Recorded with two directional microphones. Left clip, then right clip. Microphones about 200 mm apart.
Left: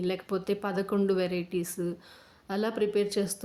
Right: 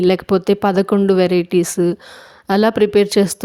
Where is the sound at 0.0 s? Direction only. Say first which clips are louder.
Right 17 dB; 45° right (ahead or behind).